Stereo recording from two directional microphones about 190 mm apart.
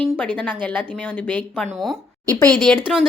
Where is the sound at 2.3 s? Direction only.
20° right (ahead or behind).